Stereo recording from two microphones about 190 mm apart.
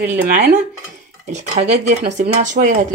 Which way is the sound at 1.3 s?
35° right (ahead or behind).